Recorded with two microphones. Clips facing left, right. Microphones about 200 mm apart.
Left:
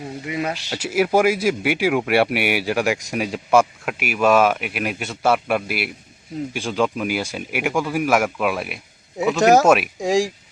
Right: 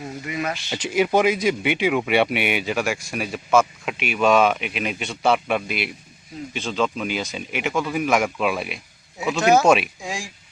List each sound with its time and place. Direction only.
0.3 s speech: 30° left (ahead or behind)
0.7 s a man's voice: 5° left (ahead or behind)
9.4 s speech: 40° left (ahead or behind)
9.6 s a man's voice: centre (ahead or behind)
10.0 s speech: 40° left (ahead or behind)